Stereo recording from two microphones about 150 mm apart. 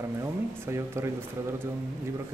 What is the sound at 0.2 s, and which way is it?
Speech, 20° right (ahead or behind).